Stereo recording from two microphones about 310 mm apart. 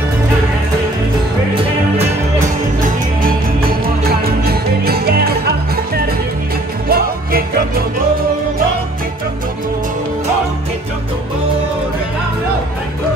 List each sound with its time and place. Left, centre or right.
3.2 s music: right
6.9 s music: right